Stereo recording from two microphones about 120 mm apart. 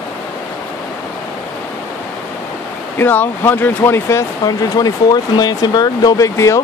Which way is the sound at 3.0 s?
15° left (ahead or behind).